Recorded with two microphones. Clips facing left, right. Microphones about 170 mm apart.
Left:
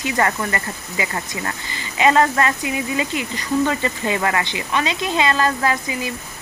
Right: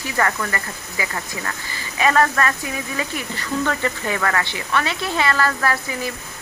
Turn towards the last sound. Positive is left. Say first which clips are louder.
# left 1 dB
turn(degrees=20)  # may be behind; listen again after turning